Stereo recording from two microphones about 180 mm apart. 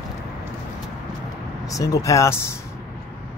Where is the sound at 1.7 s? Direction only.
20° left (ahead or behind).